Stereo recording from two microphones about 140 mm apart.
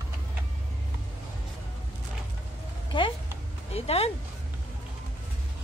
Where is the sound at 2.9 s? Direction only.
35° left (ahead or behind).